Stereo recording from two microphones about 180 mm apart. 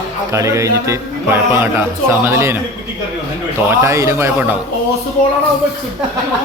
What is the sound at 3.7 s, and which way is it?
Speech, 15° right (ahead or behind).